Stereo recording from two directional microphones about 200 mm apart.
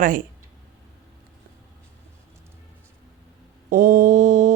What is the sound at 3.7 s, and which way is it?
Mantra, 40° right (ahead or behind).